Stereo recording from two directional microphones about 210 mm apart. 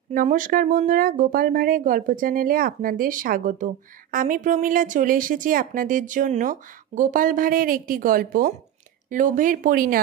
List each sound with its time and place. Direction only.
0.1 s speech: 40° right (ahead or behind)